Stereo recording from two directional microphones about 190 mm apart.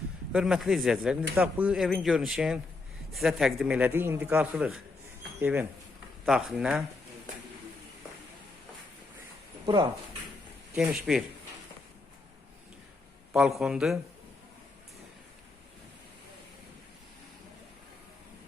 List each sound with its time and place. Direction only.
0.3 s speech: 5° right (ahead or behind)
9.6 s speech: 25° right (ahead or behind)
10.8 s speech: centre (ahead or behind)
13.3 s speech: centre (ahead or behind)